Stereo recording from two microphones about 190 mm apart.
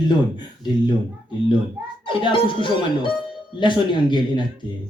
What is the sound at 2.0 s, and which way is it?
Speech, 25° left (ahead or behind).